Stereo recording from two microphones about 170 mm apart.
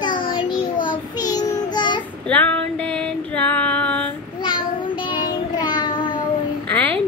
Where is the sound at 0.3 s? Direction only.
30° left (ahead or behind).